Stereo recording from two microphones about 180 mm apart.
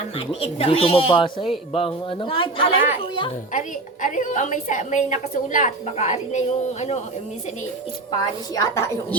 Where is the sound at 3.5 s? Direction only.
45° left (ahead or behind).